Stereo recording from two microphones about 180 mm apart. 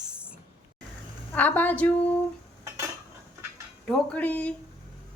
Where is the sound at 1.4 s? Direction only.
10° left (ahead or behind).